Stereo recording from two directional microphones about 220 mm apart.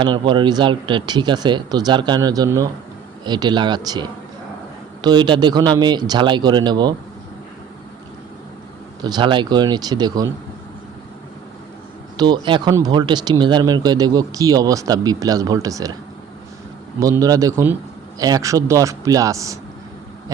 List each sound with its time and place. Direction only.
0.0 s speech: 20° right (ahead or behind)
9.0 s speech: 20° right (ahead or behind)
12.1 s speech: 20° right (ahead or behind)
17.0 s speech: 15° right (ahead or behind)